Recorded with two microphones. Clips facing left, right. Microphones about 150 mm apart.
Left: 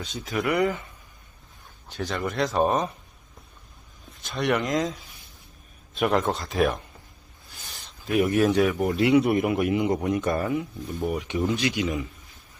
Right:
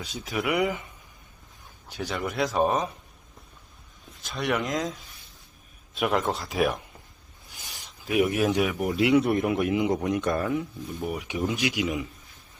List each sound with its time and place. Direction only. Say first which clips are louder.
0.0 s a man's voice: left 2 dB; 5° right (ahead or behind)
1.9 s a man's voice: left 2 dB; 10° right (ahead or behind)
4.2 s a man's voice: left 3 dB; centre (ahead or behind)
7.5 s a sound: left 1 dB; 15° right (ahead or behind)
8.0 s speech: left 2 dB; centre (ahead or behind)
8.9 s a man's voice: right 2 dB; centre (ahead or behind)
11.3 s speech: left 1 dB; 10° right (ahead or behind)